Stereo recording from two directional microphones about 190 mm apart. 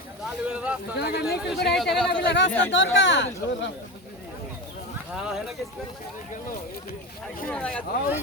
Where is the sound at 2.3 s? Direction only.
70° left (ahead or behind).